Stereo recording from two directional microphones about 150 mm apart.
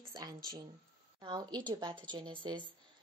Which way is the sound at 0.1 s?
25° right (ahead or behind).